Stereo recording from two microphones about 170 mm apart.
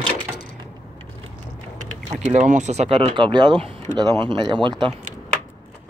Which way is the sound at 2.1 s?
45° right (ahead or behind).